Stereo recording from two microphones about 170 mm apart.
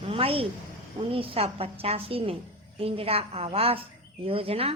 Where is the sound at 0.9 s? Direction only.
35° right (ahead or behind).